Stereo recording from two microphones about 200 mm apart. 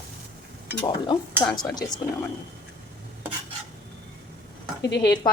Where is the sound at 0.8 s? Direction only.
25° left (ahead or behind).